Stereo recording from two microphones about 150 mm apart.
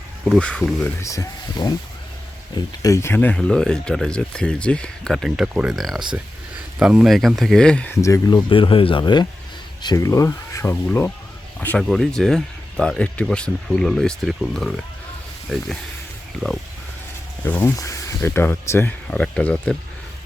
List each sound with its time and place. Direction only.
0.3 s speech: 5° left (ahead or behind)
1.0 s speech: 20° left (ahead or behind)
2.8 s speech: 20° left (ahead or behind)
8.0 s speech: 25° left (ahead or behind); by 15.6 s centre (ahead or behind)
17.4 s speech: 15° left (ahead or behind)